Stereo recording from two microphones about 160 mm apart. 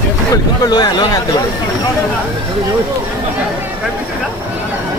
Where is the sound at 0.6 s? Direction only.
25° left (ahead or behind).